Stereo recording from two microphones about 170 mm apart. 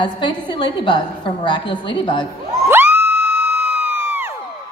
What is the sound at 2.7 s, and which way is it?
Crowd, 10° right (ahead or behind).